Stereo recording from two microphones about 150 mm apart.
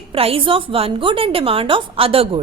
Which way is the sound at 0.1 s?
40° right (ahead or behind).